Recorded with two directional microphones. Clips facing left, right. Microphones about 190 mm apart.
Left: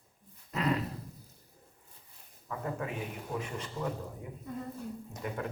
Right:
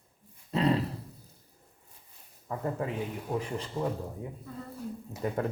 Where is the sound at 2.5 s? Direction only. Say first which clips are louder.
Right 4 dB; 30° right (ahead or behind).